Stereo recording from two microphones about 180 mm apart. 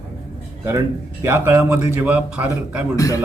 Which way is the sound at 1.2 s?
15° right (ahead or behind).